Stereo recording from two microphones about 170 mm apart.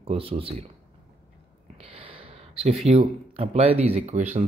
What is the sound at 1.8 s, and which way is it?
Speech, 35° right (ahead or behind).